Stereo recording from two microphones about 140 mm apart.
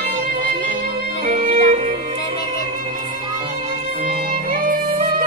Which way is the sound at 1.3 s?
45° right (ahead or behind).